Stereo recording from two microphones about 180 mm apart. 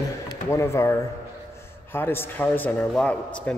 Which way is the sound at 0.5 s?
15° left (ahead or behind).